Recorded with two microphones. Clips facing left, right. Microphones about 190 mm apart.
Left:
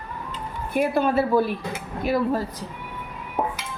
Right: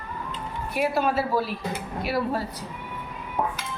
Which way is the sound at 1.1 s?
50° left (ahead or behind).